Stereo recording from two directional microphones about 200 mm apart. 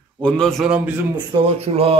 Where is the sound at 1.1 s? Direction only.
30° right (ahead or behind).